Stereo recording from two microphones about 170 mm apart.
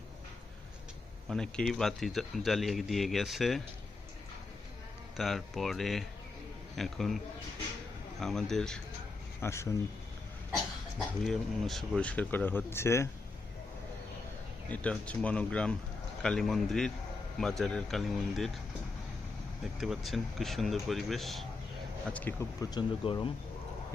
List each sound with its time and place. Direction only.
1.3 s speech: 5° left (ahead or behind)
5.1 s speech: centre (ahead or behind)
8.2 s speech: centre (ahead or behind)
9.4 s speech: 15° left (ahead or behind)
11.2 s speech: centre (ahead or behind)
14.7 s speech: 10° left (ahead or behind)
19.6 s speech: centre (ahead or behind)
22.1 s speech: 10° left (ahead or behind); by 23.3 s 25° left (ahead or behind)